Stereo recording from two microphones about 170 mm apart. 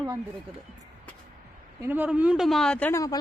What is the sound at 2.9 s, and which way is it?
Speech, 20° left (ahead or behind).